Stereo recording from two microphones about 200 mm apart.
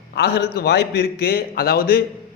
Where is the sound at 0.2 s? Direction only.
50° left (ahead or behind).